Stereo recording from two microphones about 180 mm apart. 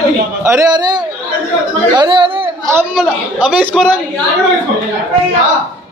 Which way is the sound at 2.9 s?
5° right (ahead or behind).